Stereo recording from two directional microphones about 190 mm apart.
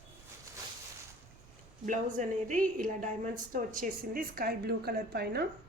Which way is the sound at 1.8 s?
40° right (ahead or behind).